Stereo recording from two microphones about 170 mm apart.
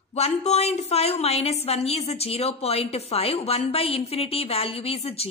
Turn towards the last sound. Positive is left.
turn(degrees=35)  # may be behind; listen again after turning